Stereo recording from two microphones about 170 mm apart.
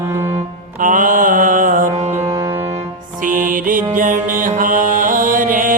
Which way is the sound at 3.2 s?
50° right (ahead or behind).